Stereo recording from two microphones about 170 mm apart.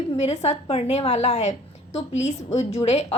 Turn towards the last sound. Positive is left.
turn(degrees=40)  # may be behind; listen again after turning